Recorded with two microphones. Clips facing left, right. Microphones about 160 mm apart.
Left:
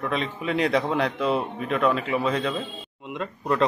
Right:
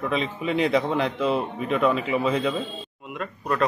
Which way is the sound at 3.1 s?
20° left (ahead or behind).